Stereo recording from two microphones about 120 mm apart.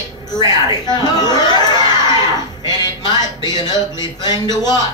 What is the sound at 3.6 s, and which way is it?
A man's voice, 35° left (ahead or behind).